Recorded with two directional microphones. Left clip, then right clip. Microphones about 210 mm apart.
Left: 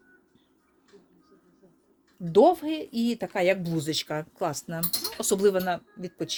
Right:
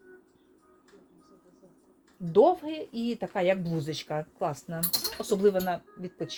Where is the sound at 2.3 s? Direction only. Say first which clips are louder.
Left 2 dB; 60° left (ahead or behind).